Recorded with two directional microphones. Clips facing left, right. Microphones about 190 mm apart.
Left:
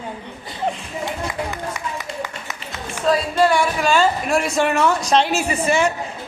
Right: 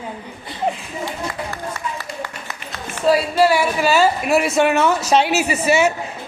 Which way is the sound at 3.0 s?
5° right (ahead or behind).